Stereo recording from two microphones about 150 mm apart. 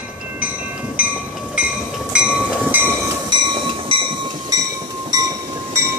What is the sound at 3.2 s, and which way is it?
Train, 35° right (ahead or behind).